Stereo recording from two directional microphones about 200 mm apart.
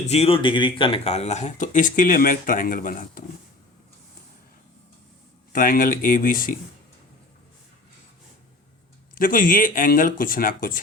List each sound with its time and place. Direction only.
0.0 s speech: 30° left (ahead or behind)
5.5 s speech: 45° left (ahead or behind)
9.1 s speech: 45° left (ahead or behind)